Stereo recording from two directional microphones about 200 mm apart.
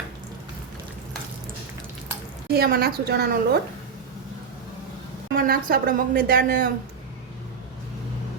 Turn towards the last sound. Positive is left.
turn(degrees=-45)  # may be behind; listen again after turning